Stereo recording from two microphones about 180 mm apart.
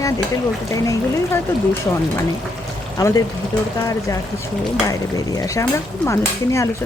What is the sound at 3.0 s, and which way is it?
Speech, 20° left (ahead or behind).